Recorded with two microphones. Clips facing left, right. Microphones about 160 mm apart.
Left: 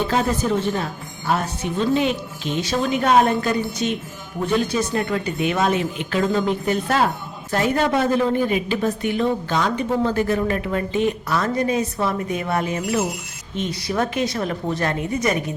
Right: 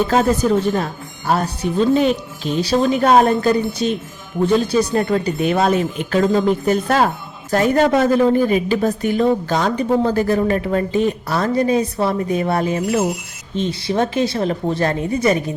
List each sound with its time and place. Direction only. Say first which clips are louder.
0.1 s a woman's voice: right 5 dB; 40° right (ahead or behind)